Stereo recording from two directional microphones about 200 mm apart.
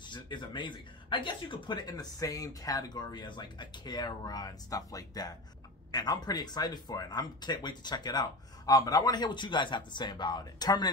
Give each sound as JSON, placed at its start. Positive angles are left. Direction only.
{"t": 0.0, "sound": "speech", "side_deg": 25}